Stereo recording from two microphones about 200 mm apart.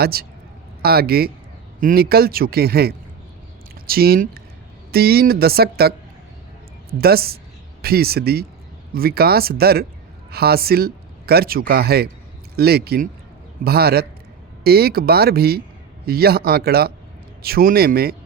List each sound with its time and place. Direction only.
0.0 s a man's voice: 50° right (ahead or behind)
7.0 s a man's voice: 50° right (ahead or behind)